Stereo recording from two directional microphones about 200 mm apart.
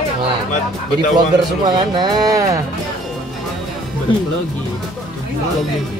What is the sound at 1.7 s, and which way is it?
Music, 20° right (ahead or behind).